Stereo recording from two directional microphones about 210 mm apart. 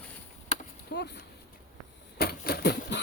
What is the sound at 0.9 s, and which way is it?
Speech, 55° left (ahead or behind).